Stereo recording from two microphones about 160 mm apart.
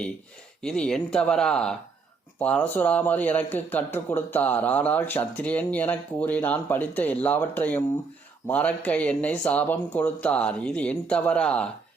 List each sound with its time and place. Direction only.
0.6 s speech: 5° left (ahead or behind)